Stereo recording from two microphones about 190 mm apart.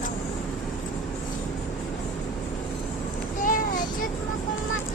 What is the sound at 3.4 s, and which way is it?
Child singing, 45° left (ahead or behind).